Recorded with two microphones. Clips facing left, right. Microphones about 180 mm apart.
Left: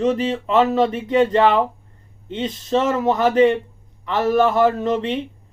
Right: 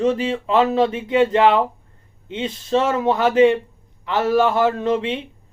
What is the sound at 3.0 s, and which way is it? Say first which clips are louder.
Speech: right 1 dB; centre (ahead or behind).